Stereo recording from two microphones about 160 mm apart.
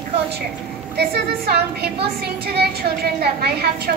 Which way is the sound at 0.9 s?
85° right.